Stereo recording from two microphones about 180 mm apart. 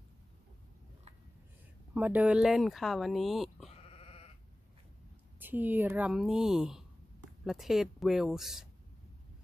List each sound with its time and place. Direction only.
2.0 s speech: 10° right (ahead or behind)
3.8 s sheep: 35° left (ahead or behind)
5.4 s a woman's voice: 10° right (ahead or behind)